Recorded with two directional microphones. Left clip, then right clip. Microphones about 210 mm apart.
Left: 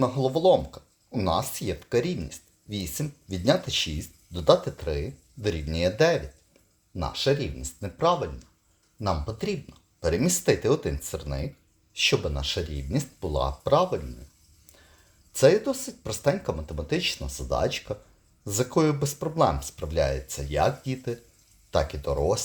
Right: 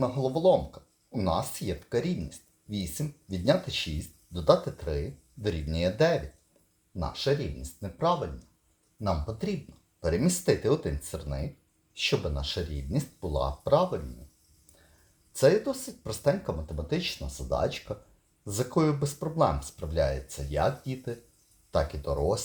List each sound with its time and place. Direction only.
0.0 s speech: 25° left (ahead or behind)
15.3 s speech: 20° left (ahead or behind)